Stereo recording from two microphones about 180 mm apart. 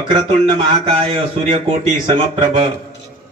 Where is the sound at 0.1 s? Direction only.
30° right (ahead or behind).